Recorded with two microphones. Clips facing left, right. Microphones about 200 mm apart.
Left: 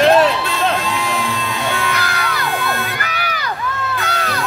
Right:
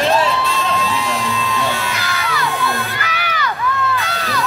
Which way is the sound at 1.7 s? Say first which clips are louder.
Left 2 dB; 55° left (ahead or behind).